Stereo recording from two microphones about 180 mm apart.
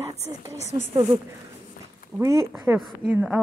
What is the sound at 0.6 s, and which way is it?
Speech, 40° left (ahead or behind).